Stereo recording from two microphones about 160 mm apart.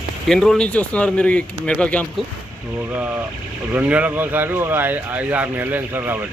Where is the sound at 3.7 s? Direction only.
10° right (ahead or behind).